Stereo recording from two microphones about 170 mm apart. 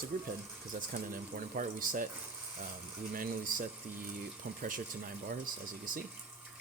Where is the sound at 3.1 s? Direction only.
55° right (ahead or behind).